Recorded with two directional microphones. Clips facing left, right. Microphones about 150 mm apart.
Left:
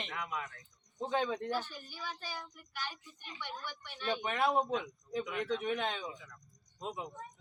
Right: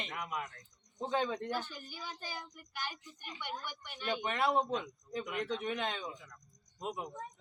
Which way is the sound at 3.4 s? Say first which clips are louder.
Right 1 dB; 15° right (ahead or behind).